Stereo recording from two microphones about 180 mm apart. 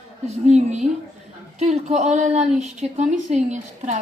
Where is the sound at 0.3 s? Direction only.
40° right (ahead or behind).